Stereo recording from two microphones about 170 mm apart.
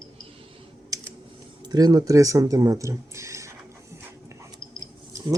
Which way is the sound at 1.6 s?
25° right (ahead or behind).